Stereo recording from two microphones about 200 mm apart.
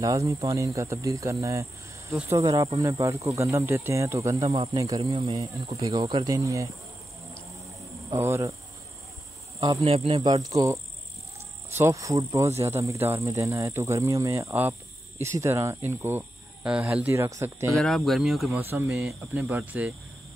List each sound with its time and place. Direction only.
0.0 s cricket: 15° right (ahead or behind)
4.4 s a man's voice: 30° right (ahead or behind)
4.7 s cricket: 15° right (ahead or behind)
8.1 s cricket: 15° right (ahead or behind)
9.8 s a man's voice: 30° right (ahead or behind)
11.7 s cricket: 15° right (ahead or behind)
17.7 s speech: centre (ahead or behind)
19.4 s cricket: 10° right (ahead or behind)